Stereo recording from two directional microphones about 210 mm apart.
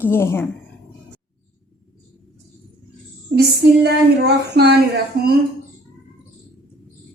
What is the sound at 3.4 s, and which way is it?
Speech, 50° right (ahead or behind).